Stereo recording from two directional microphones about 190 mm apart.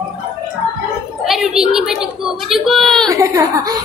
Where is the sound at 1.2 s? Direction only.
Centre (ahead or behind).